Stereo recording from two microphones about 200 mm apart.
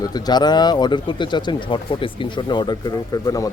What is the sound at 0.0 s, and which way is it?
Speech, 20° left (ahead or behind).